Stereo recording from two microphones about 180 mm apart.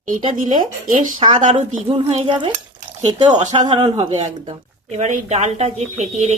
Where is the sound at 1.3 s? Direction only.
35° right (ahead or behind).